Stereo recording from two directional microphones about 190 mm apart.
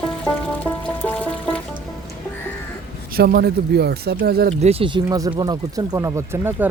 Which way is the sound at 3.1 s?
55° right (ahead or behind).